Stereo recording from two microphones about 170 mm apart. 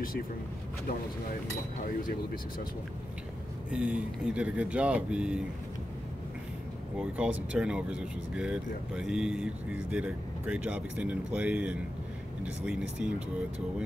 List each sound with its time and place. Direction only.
1.8 s speech: 55° left (ahead or behind)
3.7 s speech: 5° right (ahead or behind)
7.0 s speech: 5° right (ahead or behind)